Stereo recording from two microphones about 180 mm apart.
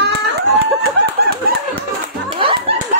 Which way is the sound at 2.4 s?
30° right (ahead or behind).